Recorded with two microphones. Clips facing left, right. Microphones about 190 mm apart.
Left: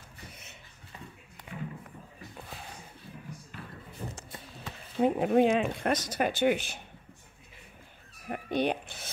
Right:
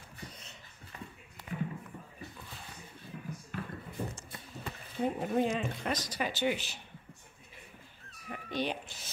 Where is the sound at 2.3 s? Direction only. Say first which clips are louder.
Left 5 dB; 55° left (ahead or behind).